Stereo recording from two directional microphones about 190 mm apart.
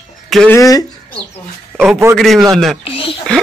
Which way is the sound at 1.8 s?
10° right (ahead or behind).